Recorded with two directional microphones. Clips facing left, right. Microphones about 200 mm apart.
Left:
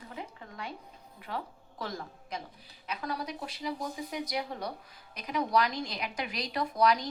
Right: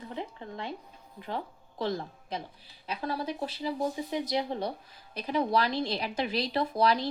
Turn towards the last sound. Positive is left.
turn(degrees=-30)  # may be behind; listen again after turning